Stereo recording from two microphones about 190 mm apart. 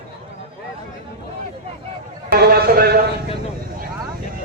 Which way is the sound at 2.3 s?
55° right (ahead or behind).